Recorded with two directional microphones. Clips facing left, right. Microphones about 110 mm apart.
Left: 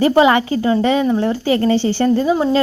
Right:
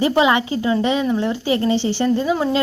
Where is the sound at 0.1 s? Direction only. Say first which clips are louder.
Left 4 dB; 45° left (ahead or behind).